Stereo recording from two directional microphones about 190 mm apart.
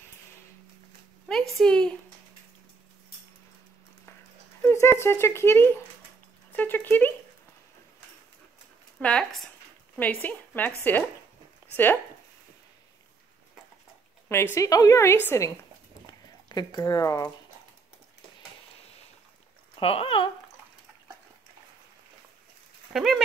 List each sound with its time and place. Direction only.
1.3 s a woman's voice: 5° left (ahead or behind)
4.6 s a woman's voice: 15° left (ahead or behind)
9.0 s a woman's voice: 5° left (ahead or behind)
14.3 s a woman's voice: 15° left (ahead or behind)
19.8 s speech: 30° left (ahead or behind)
22.9 s a woman's voice: centre (ahead or behind)